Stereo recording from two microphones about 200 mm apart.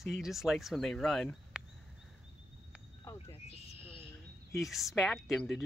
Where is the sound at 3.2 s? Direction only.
30° left (ahead or behind).